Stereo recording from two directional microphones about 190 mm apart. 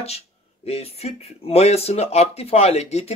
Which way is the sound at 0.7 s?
35° left (ahead or behind).